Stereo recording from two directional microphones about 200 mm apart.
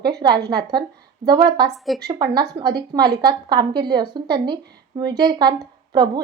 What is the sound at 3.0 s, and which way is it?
Speech, 50° right (ahead or behind).